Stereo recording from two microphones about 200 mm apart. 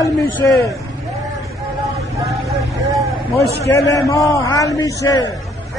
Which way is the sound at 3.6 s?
15° left (ahead or behind).